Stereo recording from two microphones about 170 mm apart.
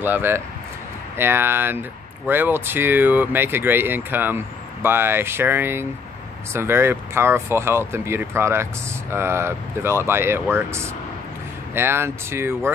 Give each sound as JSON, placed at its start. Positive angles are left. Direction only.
{"t": 0.0, "sound": "speech", "side_deg": -10}